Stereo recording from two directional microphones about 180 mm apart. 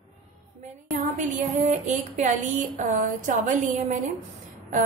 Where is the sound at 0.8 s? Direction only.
40° right (ahead or behind).